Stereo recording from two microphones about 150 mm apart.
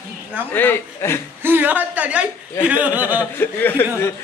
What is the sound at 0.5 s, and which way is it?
Speech, 15° left (ahead or behind).